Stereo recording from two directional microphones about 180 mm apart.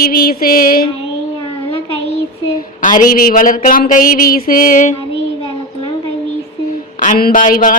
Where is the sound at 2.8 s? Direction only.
45° left (ahead or behind).